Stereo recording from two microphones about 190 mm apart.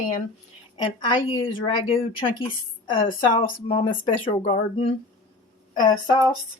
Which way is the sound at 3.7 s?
30° left (ahead or behind).